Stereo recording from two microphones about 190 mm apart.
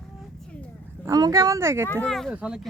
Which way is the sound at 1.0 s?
20° right (ahead or behind).